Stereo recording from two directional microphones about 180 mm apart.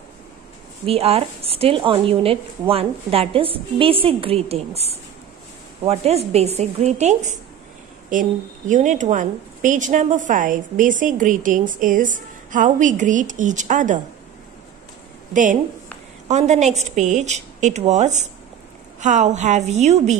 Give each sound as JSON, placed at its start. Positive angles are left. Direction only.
{"t": 0.8, "sound": "a woman's voice", "side_deg": -35}
{"t": 16.3, "sound": "a woman's voice", "side_deg": -40}